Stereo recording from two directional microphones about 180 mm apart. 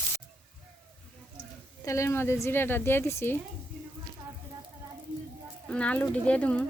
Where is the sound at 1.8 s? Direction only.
15° left (ahead or behind).